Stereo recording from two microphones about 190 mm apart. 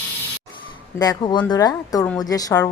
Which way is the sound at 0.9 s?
20° left (ahead or behind).